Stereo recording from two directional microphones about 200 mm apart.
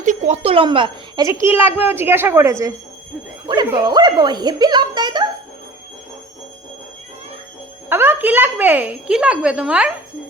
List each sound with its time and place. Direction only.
0.0 s a child's voice: 35° right (ahead or behind)
7.9 s a child's voice: 10° right (ahead or behind)